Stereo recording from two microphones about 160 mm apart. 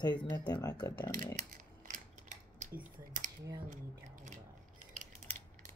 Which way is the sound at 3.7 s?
55° right (ahead or behind).